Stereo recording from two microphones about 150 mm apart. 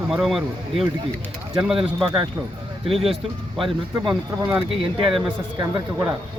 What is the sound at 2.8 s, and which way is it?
Speech, 40° right (ahead or behind).